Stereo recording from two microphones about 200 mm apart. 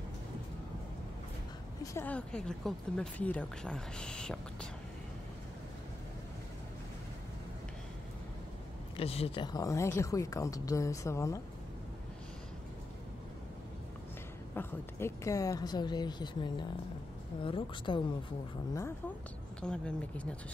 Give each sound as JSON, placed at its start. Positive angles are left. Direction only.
{"t": 1.8, "sound": "speech", "side_deg": 10}
{"t": 8.9, "sound": "speech", "side_deg": 30}
{"t": 14.5, "sound": "a woman's voice", "side_deg": 10}
{"t": 19.6, "sound": "speech", "side_deg": 5}